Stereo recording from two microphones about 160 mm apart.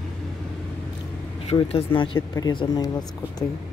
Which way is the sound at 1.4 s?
35° left (ahead or behind).